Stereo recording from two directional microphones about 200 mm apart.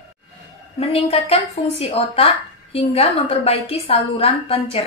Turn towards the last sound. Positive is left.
turn(degrees=30)  # may be behind; listen again after turning